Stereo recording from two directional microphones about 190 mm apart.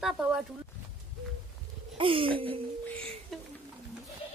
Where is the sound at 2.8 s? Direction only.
5° left (ahead or behind).